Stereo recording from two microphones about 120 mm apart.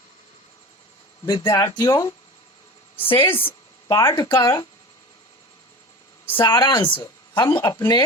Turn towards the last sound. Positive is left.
turn(degrees=25)  # may be behind; listen again after turning